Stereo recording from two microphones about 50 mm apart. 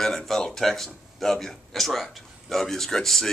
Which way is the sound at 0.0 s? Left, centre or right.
Centre.